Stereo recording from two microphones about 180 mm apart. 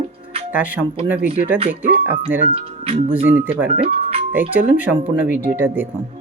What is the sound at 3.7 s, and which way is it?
Speech, 35° right (ahead or behind).